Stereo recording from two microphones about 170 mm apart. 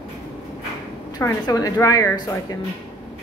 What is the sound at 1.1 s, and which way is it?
A woman's voice, 20° left (ahead or behind).